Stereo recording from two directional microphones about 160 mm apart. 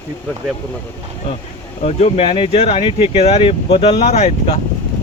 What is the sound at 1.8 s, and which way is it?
Speech, 40° left (ahead or behind).